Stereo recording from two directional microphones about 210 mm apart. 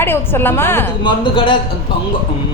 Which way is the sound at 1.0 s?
25° left (ahead or behind).